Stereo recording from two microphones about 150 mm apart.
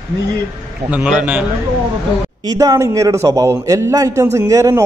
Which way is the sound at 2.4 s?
25° right (ahead or behind).